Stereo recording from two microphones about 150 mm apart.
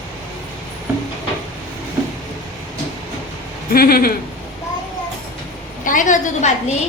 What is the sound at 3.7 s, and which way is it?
Speech, 80° left.